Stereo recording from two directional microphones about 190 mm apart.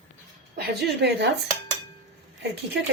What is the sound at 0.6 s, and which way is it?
Speech, 60° right (ahead or behind).